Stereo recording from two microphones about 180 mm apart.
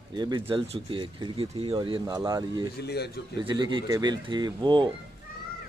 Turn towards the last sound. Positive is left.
turn(degrees=-25)  # may be behind; listen again after turning